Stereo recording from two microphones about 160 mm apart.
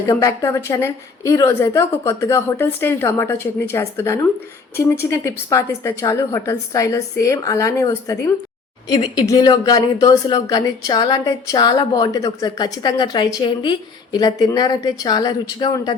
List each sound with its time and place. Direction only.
0.1 s a woman's voice: 20° left (ahead or behind)